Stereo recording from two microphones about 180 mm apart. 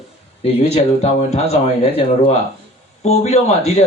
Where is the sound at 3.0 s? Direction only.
35° left (ahead or behind).